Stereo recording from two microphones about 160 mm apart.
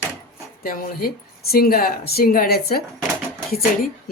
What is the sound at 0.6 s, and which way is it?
Speech, 65° left (ahead or behind).